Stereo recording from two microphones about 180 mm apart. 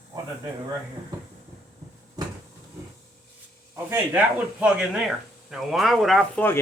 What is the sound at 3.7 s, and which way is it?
A man's voice, 10° right (ahead or behind).